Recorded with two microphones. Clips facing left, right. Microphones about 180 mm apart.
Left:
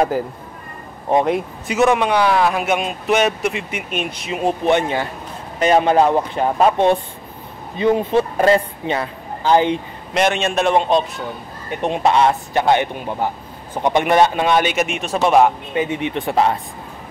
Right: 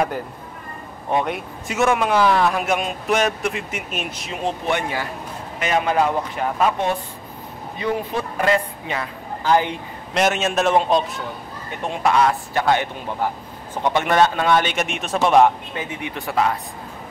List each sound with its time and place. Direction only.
1.7 s speech: centre (ahead or behind)
4.4 s speech: 10° left (ahead or behind)
4.7 s a woman's voice: 25° left (ahead or behind)
10.1 s speech: 5° right (ahead or behind)
11.8 s speech: 25° left (ahead or behind); by 15.5 s centre (ahead or behind)
15.7 s speech: 20° left (ahead or behind)